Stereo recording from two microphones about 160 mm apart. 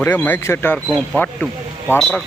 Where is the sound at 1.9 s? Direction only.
Centre (ahead or behind).